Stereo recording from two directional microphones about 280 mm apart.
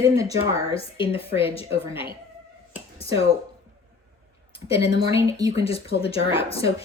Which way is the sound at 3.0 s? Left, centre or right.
Centre.